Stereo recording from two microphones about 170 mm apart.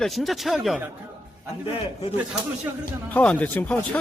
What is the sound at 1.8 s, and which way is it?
Speech, 35° left (ahead or behind).